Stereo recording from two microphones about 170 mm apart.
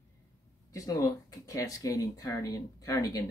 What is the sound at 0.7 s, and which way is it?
Speech, 20° left (ahead or behind).